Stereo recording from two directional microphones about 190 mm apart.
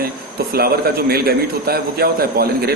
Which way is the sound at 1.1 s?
55° right (ahead or behind).